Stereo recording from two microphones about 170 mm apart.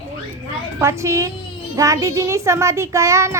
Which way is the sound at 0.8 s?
15° right (ahead or behind).